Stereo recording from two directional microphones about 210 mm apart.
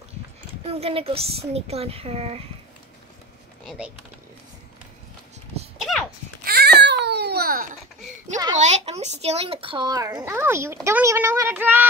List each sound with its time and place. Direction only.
0.7 s a woman's voice: 30° right (ahead or behind)
3.6 s speech: 5° right (ahead or behind)
5.8 s a sound: centre (ahead or behind)
6.4 s baby cry: 50° right (ahead or behind)
8.5 s speech: 35° right (ahead or behind); by 11.8 s 10° right (ahead or behind)